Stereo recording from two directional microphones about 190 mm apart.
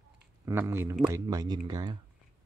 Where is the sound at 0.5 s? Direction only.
15° right (ahead or behind).